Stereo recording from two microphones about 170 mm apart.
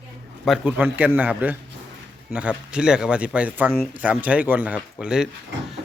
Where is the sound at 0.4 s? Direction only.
5° right (ahead or behind).